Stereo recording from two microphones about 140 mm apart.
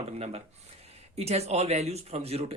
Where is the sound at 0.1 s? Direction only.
50° right (ahead or behind).